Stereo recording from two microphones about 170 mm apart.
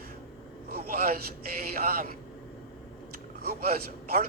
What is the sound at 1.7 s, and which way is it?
Speech, 60° right (ahead or behind).